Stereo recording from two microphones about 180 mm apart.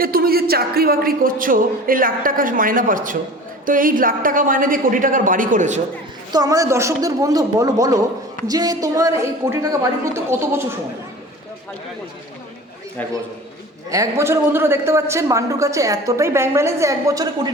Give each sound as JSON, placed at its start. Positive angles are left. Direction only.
{"t": 0.0, "sound": "speech", "side_deg": -55}
{"t": 6.3, "sound": "a man's voice", "side_deg": -20}
{"t": 13.9, "sound": "a man's voice", "side_deg": -15}